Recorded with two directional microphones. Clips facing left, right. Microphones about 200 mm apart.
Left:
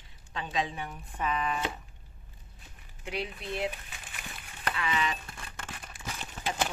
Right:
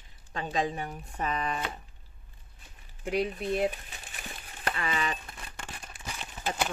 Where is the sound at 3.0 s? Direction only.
50° right (ahead or behind).